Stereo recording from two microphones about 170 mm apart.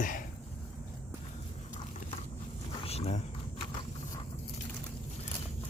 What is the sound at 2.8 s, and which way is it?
Dog, 35° left (ahead or behind).